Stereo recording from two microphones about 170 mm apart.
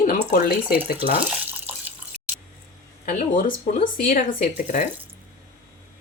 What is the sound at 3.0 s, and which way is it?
A woman's voice, 55° left (ahead or behind).